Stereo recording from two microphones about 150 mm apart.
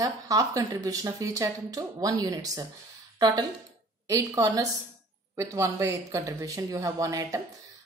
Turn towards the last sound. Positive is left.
turn(degrees=-20)  # may be behind; listen again after turning